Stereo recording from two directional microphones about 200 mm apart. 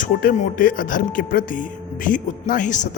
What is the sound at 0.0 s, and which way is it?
Speech, 40° left (ahead or behind).